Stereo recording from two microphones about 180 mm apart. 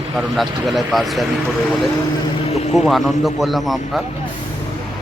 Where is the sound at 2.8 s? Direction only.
Centre (ahead or behind).